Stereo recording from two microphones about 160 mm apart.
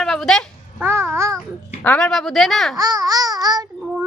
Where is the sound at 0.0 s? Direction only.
Centre (ahead or behind).